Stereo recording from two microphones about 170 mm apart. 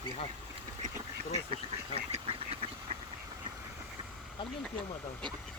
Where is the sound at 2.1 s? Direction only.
35° right (ahead or behind).